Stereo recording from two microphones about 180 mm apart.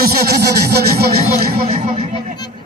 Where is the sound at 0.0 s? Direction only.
60° right (ahead or behind).